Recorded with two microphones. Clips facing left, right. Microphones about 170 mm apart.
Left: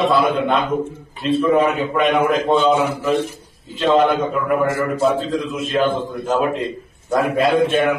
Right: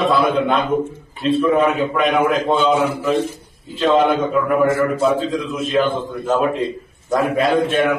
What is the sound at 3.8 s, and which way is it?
A man's voice, centre (ahead or behind).